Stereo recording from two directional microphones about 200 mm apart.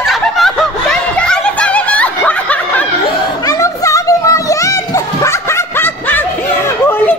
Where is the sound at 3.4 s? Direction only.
15° left (ahead or behind).